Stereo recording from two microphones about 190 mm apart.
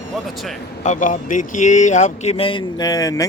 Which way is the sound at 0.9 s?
40° left (ahead or behind).